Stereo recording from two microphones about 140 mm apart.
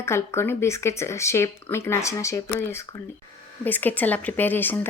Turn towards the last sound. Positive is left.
turn(degrees=15)  # may be behind; listen again after turning